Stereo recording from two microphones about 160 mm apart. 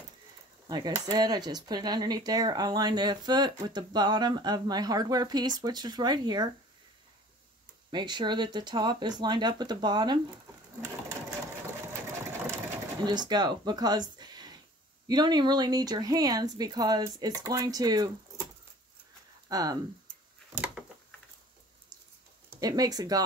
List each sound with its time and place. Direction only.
0.7 s speech: 25° right (ahead or behind)
7.9 s speech: 30° right (ahead or behind)
10.8 s sewing machine: 15° right (ahead or behind)
13.0 s speech: 25° right (ahead or behind)
19.5 s speech: 20° right (ahead or behind)
20.5 s a sound: 5° right (ahead or behind)
22.6 s speech: 25° right (ahead or behind)